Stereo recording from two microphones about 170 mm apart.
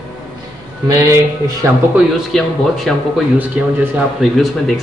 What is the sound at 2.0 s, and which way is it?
Speech, centre (ahead or behind).